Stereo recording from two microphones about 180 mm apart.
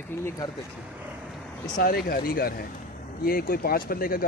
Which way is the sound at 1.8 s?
55° left (ahead or behind).